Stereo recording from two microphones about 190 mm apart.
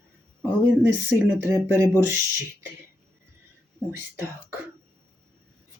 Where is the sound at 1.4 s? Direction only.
15° right (ahead or behind).